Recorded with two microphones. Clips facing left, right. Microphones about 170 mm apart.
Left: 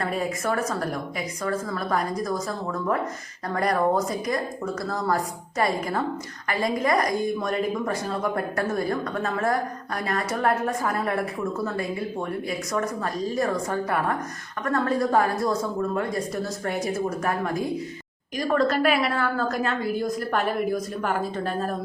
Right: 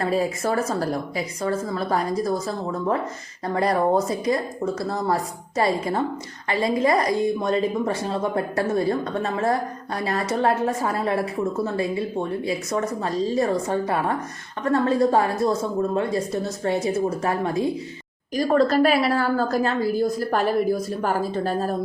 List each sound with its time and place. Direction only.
0.0 s a woman's voice: 30° right (ahead or behind)
3.4 s a woman's voice: 25° right (ahead or behind)